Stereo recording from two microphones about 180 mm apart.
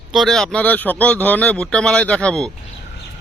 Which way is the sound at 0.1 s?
Centre (ahead or behind).